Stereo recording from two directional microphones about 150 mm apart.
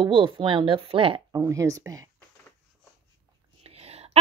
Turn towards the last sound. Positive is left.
turn(degrees=-45)  # may be behind; listen again after turning